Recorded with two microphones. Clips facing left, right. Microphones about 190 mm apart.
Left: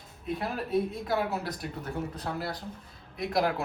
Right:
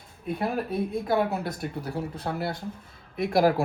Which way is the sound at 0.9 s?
55° right (ahead or behind).